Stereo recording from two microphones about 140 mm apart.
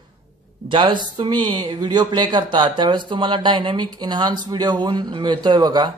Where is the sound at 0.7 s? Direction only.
35° right (ahead or behind).